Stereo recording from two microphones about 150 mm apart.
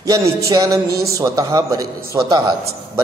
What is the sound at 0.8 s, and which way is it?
Speech, 90° right.